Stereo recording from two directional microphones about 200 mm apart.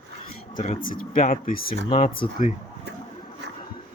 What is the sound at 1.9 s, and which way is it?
Speech, 30° left (ahead or behind).